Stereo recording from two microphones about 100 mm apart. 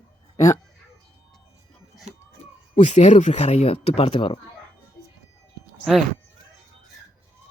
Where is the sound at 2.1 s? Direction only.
90° right.